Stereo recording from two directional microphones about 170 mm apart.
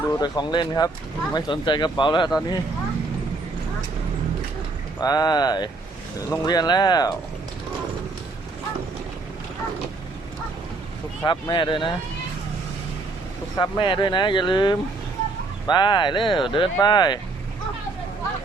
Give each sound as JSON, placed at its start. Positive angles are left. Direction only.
{"t": 0.2, "sound": "speech", "side_deg": 25}
{"t": 4.9, "sound": "speech", "side_deg": 20}
{"t": 11.2, "sound": "speech", "side_deg": 25}
{"t": 13.6, "sound": "speech", "side_deg": 30}